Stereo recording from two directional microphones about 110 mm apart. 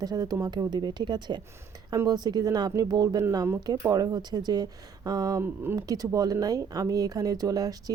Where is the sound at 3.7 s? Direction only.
40° right (ahead or behind).